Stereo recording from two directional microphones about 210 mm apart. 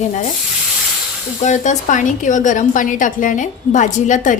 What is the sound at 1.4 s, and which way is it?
A woman's voice, 35° left (ahead or behind).